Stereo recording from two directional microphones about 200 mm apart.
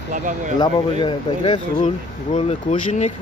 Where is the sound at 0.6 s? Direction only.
25° left (ahead or behind).